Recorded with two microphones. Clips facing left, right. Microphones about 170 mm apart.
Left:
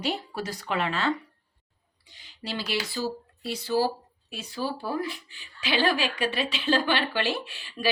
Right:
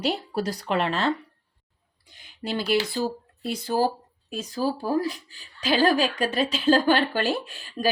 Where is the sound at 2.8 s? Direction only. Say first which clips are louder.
Right 3 dB; 50° right (ahead or behind).